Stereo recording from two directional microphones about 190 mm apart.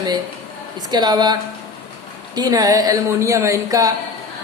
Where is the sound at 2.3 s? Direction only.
20° right (ahead or behind).